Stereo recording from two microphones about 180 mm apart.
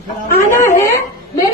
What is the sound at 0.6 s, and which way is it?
Speech, 15° left (ahead or behind).